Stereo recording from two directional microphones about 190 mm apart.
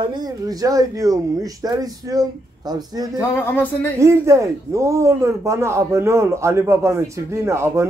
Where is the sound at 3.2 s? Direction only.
10° left (ahead or behind).